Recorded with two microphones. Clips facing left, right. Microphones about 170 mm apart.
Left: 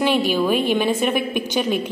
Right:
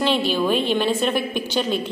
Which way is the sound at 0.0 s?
10° left (ahead or behind).